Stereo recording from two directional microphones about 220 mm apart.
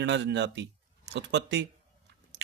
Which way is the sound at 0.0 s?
55° right (ahead or behind).